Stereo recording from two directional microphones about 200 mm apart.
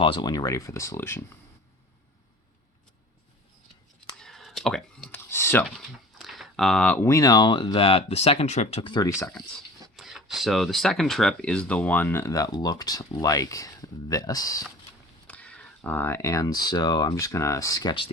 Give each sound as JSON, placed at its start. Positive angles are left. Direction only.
{"t": 0.0, "sound": "speech", "side_deg": 25}
{"t": 4.2, "sound": "a sound", "side_deg": 0}
{"t": 5.6, "sound": "speech", "side_deg": 0}
{"t": 9.9, "sound": "speech", "side_deg": 0}
{"t": 15.3, "sound": "speech", "side_deg": 5}